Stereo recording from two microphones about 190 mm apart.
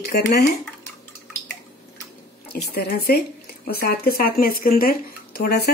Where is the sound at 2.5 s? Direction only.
55° left (ahead or behind).